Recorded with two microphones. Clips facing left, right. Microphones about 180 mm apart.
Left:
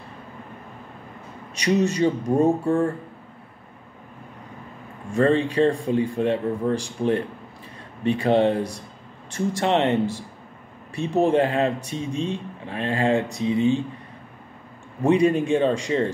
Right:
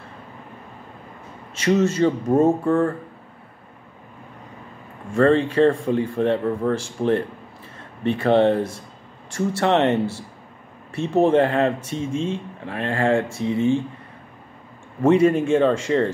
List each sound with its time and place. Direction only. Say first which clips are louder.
1.5 s speech: right 2 dB; 15° left (ahead or behind)
5.3 s speech: right 3 dB; 15° left (ahead or behind)
11.2 s speech: right 3 dB; 15° left (ahead or behind)
15.0 s speech: right 2 dB; 15° left (ahead or behind)